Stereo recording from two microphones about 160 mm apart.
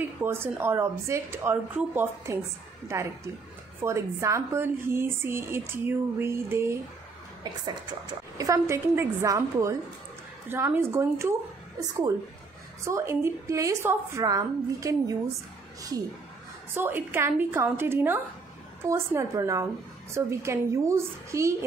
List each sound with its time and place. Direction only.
0.2 s speech: 15° right (ahead or behind)
3.8 s a woman's voice: 20° right (ahead or behind)
12.8 s a woman's voice: 15° right (ahead or behind)
16.7 s a woman's voice: 15° right (ahead or behind)